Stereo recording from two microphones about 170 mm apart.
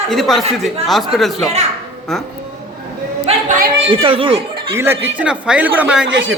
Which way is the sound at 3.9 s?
30° right (ahead or behind).